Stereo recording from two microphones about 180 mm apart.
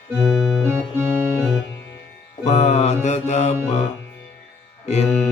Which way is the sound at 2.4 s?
40° left (ahead or behind).